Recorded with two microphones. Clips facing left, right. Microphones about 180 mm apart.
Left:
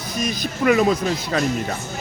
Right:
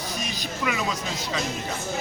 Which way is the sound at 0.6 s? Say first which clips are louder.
Left 12 dB; 50° left (ahead or behind).